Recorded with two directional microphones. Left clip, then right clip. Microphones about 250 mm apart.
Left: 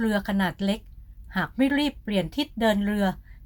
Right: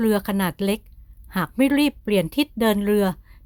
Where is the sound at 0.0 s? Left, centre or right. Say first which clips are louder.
Right 4 dB; right.